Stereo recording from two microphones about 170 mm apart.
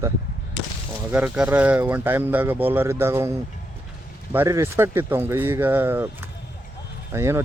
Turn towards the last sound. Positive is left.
turn(degrees=-15)  # may be behind; listen again after turning